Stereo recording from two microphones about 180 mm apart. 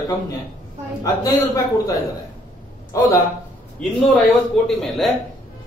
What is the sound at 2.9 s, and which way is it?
Speech, 20° left (ahead or behind).